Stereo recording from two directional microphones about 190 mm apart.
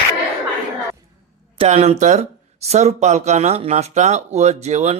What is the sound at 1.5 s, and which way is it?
A man's voice, 35° right (ahead or behind).